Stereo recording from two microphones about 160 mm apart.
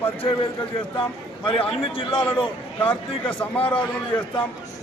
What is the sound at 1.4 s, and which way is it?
Speech, 35° left (ahead or behind).